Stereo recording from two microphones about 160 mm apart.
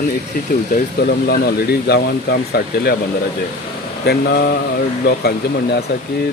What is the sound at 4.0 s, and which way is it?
Mantra, 90° left.